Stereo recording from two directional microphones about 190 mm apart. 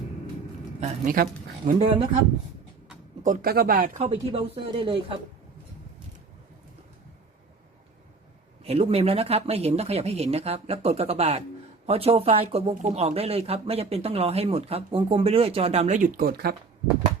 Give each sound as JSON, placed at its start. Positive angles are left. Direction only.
{"t": 0.8, "sound": "speech", "side_deg": -45}
{"t": 1.8, "sound": "speech", "side_deg": -25}
{"t": 3.2, "sound": "speech", "side_deg": -50}
{"t": 8.6, "sound": "speech", "side_deg": -30}